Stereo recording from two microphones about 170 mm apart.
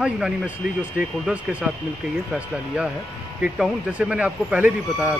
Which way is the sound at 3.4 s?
5° right (ahead or behind).